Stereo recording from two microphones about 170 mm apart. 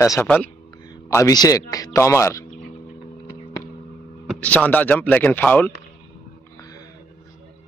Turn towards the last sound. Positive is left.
turn(degrees=10)  # may be behind; listen again after turning